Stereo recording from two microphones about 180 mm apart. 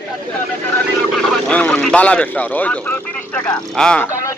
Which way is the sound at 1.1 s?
5° left (ahead or behind).